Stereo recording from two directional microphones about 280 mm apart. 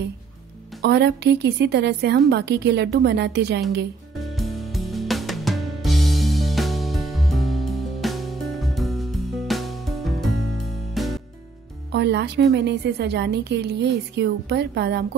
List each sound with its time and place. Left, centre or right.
0.8 s a woman's voice: right
4.2 s music: centre
11.9 s a woman's voice: right